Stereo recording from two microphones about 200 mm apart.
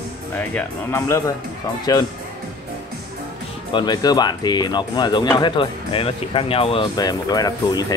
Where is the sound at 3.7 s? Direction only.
20° left (ahead or behind).